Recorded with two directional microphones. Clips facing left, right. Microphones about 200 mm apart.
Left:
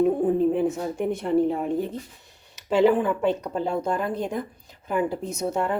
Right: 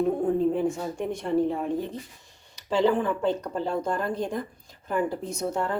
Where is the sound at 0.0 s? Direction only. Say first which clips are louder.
Left 3 dB; 5° left (ahead or behind).